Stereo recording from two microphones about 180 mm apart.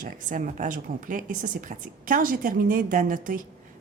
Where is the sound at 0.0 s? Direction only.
45° right (ahead or behind).